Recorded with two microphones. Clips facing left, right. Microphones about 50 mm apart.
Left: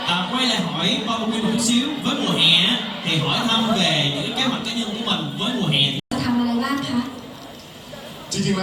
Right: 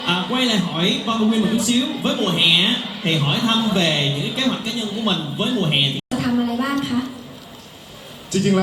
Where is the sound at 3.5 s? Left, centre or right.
Left.